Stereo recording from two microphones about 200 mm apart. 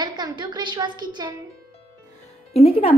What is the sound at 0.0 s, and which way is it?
A woman's voice, 20° right (ahead or behind).